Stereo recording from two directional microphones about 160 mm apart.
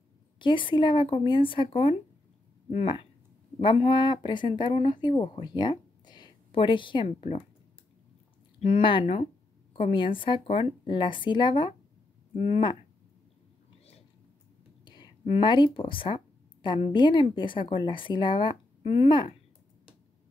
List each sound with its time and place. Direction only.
0.4 s a woman's voice: 30° left (ahead or behind)
7.2 s a woman's voice: 40° left (ahead or behind)
8.5 s a woman's voice: 40° left (ahead or behind)
14.9 s a woman's voice: 35° left (ahead or behind)